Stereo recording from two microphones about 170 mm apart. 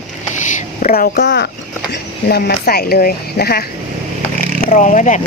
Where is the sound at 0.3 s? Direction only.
50° left (ahead or behind); by 1.5 s 85° left.